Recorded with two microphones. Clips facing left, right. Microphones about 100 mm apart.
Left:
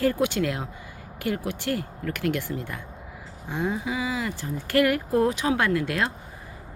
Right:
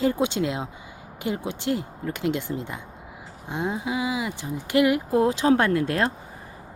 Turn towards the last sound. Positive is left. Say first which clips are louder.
# right 2 dB
turn(degrees=-35)  # may be behind; listen again after turning